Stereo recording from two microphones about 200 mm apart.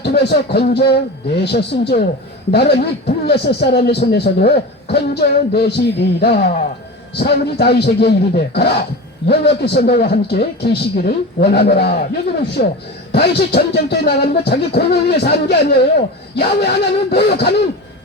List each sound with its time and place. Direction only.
0.0 s a man's voice: 55° left (ahead or behind)